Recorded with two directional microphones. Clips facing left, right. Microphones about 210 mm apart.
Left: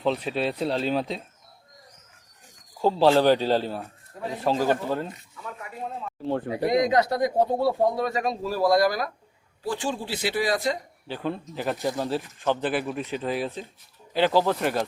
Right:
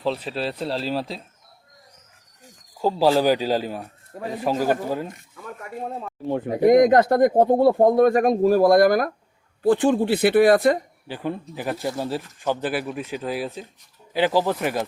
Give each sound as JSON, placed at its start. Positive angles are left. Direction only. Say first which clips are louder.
{"t": 0.0, "sound": "speech", "louder": "even", "side_deg": 0}
{"t": 2.8, "sound": "a man's voice", "louder": "even", "side_deg": -10}
{"t": 5.0, "sound": "speech", "louder": "right 2 dB", "side_deg": -50}
{"t": 6.2, "sound": "a man's voice", "louder": "right 2 dB", "side_deg": -15}
{"t": 6.7, "sound": "speech", "louder": "right 8 dB", "side_deg": -50}
{"t": 11.1, "sound": "a man's voice", "louder": "right 1 dB", "side_deg": -10}